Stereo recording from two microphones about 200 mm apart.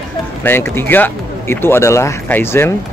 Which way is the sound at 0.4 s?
10° left (ahead or behind).